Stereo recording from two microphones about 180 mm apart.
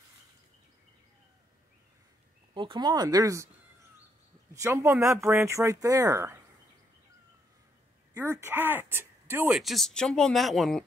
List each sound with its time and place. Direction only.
2.5 s speech: 25° right (ahead or behind)
4.6 s speech: 15° right (ahead or behind)
8.1 s speech: 15° right (ahead or behind)
9.6 s speech: centre (ahead or behind)